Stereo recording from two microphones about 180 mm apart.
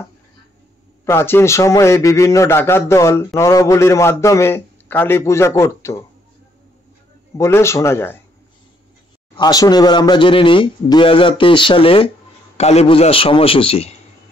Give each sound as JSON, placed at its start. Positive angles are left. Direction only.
{"t": 1.0, "sound": "a man's voice", "side_deg": 15}
{"t": 7.3, "sound": "a man's voice", "side_deg": 15}
{"t": 9.4, "sound": "a man's voice", "side_deg": 20}